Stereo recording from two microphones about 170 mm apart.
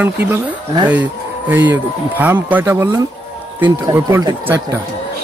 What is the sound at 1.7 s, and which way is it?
Speech, 10° right (ahead or behind).